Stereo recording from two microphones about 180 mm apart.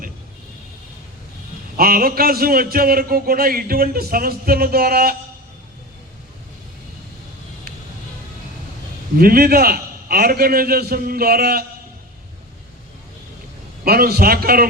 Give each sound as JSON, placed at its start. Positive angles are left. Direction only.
{"t": 1.7, "sound": "a man's voice", "side_deg": -55}
{"t": 9.1, "sound": "a man's voice", "side_deg": -55}
{"t": 13.8, "sound": "a man's voice", "side_deg": -60}